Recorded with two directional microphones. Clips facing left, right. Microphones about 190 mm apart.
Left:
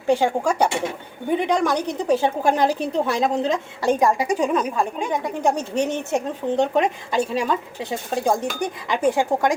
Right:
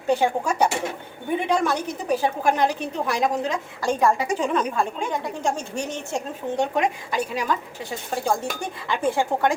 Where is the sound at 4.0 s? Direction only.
15° left (ahead or behind).